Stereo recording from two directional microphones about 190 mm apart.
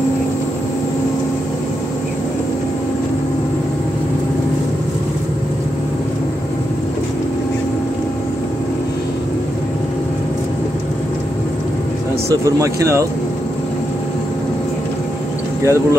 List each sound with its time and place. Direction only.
12.4 s speech: 15° right (ahead or behind)
15.6 s speech: 15° right (ahead or behind)